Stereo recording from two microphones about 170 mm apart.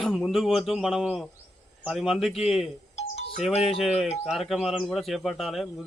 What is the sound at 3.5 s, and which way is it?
Speech, 35° left (ahead or behind).